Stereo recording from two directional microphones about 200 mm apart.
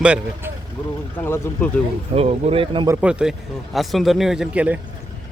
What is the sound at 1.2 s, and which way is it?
Speech, 10° left (ahead or behind).